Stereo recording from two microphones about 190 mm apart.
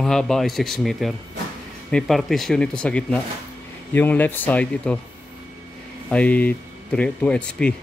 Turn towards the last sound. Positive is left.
turn(degrees=5)  # may be behind; listen again after turning